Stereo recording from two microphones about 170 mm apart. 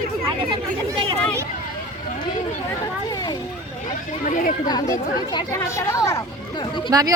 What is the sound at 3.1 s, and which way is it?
Speech, 25° left (ahead or behind).